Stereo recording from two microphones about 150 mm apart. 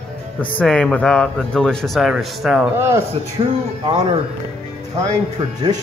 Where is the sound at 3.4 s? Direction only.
35° right (ahead or behind).